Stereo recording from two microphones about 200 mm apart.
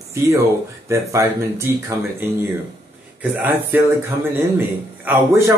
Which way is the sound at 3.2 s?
10° right (ahead or behind).